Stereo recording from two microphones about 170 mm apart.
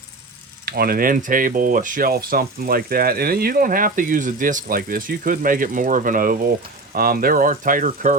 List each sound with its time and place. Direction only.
0.6 s speech: 65° right (ahead or behind)